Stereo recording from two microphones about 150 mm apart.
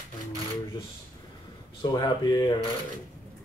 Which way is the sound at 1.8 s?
25° left (ahead or behind).